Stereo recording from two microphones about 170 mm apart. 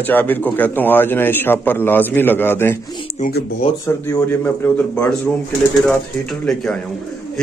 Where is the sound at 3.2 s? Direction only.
45° left (ahead or behind).